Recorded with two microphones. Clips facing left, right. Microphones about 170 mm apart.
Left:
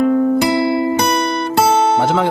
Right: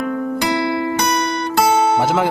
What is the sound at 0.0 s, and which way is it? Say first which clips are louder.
Music: left 7 dB; 30° left (ahead or behind).